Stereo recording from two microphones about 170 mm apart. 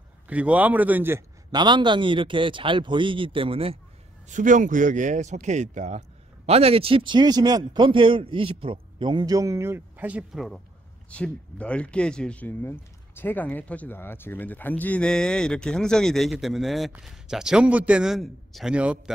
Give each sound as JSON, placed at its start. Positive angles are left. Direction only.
{"t": 0.3, "sound": "a man's voice", "side_deg": -10}
{"t": 1.5, "sound": "speech", "side_deg": -25}
{"t": 4.3, "sound": "speech", "side_deg": -50}